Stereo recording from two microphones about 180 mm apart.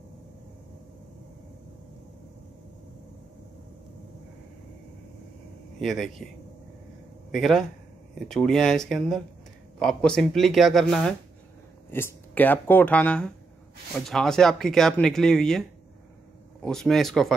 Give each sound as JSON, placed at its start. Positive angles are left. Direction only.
{"t": 5.8, "sound": "speech", "side_deg": 0}
{"t": 7.2, "sound": "speech", "side_deg": 0}
{"t": 16.6, "sound": "speech", "side_deg": 0}